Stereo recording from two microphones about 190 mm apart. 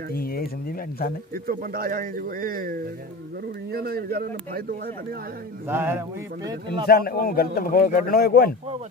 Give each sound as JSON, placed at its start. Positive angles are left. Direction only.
{"t": 0.1, "sound": "a man's voice", "side_deg": 50}
{"t": 1.3, "sound": "speech", "side_deg": -50}
{"t": 5.7, "sound": "speech", "side_deg": -10}
{"t": 6.9, "sound": "a man's voice", "side_deg": 50}